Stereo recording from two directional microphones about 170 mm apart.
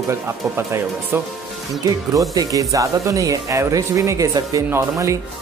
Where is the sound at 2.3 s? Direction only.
20° right (ahead or behind).